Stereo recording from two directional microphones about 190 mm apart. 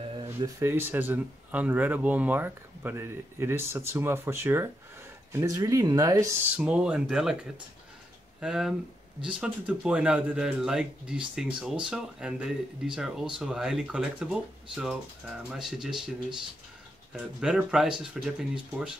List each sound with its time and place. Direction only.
0.0 s a sound: 30° right (ahead or behind)
0.6 s speech: 10° right (ahead or behind)
6.5 s a man's voice: 5° right (ahead or behind)
8.4 s a man's voice: 5° right (ahead or behind)
17.1 s a man's voice: centre (ahead or behind)